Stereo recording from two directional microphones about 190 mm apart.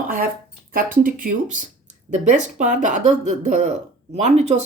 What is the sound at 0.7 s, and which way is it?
Speech, 50° right (ahead or behind).